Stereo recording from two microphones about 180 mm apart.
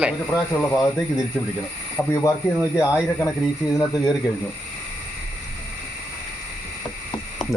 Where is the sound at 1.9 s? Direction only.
15° left (ahead or behind).